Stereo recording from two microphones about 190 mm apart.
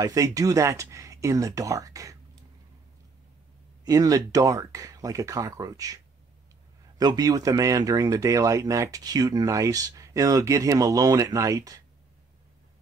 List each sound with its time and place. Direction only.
0.0 s speech: 20° right (ahead or behind)
3.8 s speech: 20° right (ahead or behind)
7.0 s speech: 20° right (ahead or behind)